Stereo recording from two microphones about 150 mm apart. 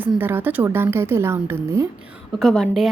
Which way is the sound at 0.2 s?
15° right (ahead or behind).